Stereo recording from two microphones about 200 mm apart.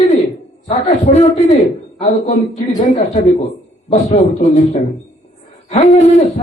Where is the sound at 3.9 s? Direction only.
30° left (ahead or behind).